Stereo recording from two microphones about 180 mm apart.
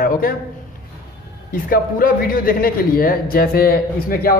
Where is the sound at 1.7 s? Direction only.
50° left (ahead or behind).